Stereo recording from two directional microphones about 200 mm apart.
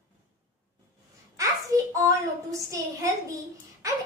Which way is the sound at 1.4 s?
15° right (ahead or behind).